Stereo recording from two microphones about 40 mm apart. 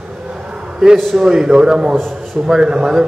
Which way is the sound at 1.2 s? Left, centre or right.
Centre.